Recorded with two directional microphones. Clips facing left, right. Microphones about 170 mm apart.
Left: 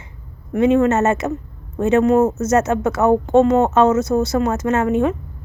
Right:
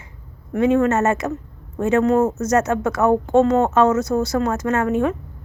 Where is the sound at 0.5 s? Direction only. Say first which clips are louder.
Left 2 dB; 20° left (ahead or behind).